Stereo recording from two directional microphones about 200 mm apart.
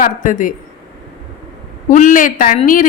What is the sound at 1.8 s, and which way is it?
A woman's voice, 40° left (ahead or behind).